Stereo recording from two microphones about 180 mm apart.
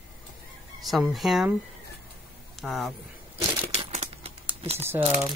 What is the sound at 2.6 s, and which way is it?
Speech, centre (ahead or behind).